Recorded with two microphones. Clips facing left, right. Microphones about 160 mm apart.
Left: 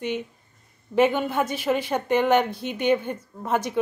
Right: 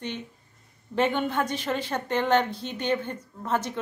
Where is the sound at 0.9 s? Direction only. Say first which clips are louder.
Left 4 dB; 10° left (ahead or behind).